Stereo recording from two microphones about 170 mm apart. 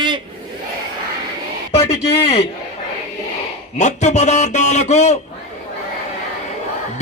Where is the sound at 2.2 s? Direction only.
35° left (ahead or behind).